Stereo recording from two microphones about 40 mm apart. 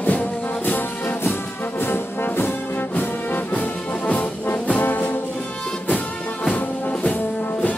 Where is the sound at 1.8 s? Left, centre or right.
Left.